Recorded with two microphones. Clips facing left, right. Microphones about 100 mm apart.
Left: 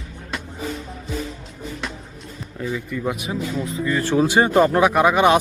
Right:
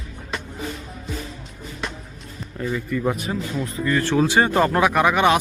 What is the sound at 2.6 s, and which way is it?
A man's voice, 5° left (ahead or behind).